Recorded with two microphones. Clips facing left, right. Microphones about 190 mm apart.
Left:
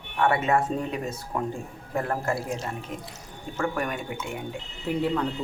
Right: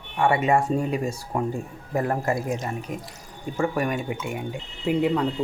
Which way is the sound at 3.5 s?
10° right (ahead or behind).